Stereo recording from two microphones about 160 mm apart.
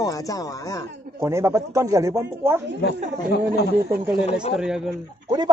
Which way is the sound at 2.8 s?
90° left.